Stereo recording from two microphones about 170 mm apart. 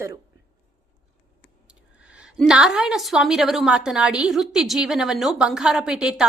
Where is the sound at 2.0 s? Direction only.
5° right (ahead or behind).